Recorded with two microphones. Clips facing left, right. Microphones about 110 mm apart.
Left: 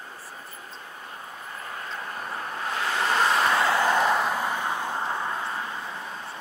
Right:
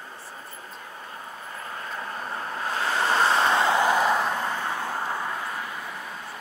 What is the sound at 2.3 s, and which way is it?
Vehicle, 30° right (ahead or behind).